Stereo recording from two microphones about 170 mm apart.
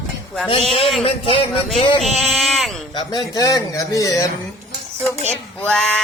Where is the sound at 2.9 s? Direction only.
25° left (ahead or behind).